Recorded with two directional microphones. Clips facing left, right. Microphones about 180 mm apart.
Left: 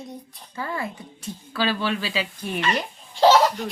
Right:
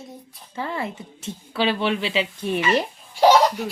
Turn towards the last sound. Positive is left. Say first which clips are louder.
# right 1 dB
turn(degrees=-10)  # may be behind; listen again after turning